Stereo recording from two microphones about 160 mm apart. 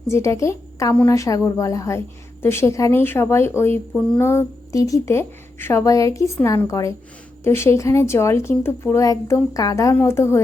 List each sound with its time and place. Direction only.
0.1 s a woman's voice: 20° left (ahead or behind)